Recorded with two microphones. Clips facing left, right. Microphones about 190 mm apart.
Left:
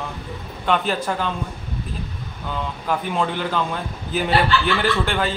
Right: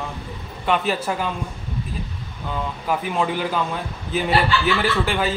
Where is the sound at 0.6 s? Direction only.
5° right (ahead or behind).